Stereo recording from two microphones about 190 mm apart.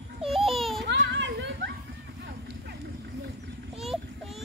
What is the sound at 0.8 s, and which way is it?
Children playing, 65° right (ahead or behind).